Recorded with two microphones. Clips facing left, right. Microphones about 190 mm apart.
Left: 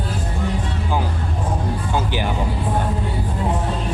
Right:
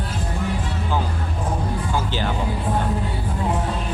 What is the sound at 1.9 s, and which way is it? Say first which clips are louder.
Music: left 3 dB; 15° left (ahead or behind).